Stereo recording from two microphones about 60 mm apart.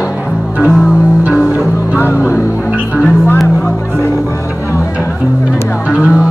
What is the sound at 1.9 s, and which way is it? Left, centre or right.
Music, left.